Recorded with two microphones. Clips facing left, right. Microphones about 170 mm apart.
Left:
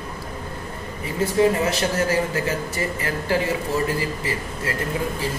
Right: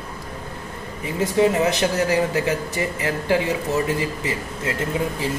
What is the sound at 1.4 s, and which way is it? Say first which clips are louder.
A man's voice: right 1 dB; 15° right (ahead or behind).